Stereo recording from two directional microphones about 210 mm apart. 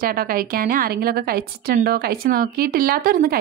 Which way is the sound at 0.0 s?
45° right (ahead or behind).